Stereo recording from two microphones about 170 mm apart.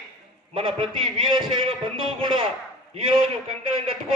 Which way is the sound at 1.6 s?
30° right (ahead or behind).